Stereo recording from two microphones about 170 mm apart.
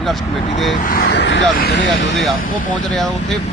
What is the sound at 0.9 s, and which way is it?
Speech, 60° left (ahead or behind).